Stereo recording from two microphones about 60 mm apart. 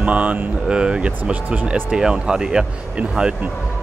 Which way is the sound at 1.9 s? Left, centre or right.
Centre.